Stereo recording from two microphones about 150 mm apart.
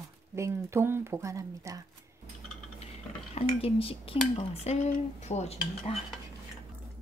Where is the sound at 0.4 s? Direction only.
20° right (ahead or behind).